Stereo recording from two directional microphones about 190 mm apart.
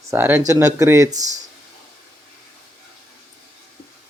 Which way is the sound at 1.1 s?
40° right (ahead or behind).